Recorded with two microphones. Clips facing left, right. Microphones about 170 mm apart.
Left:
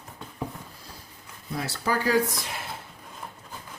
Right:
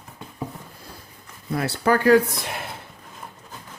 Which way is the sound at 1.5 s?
60° right (ahead or behind).